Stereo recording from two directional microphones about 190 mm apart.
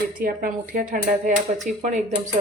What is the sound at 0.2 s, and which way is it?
Speech, 45° right (ahead or behind).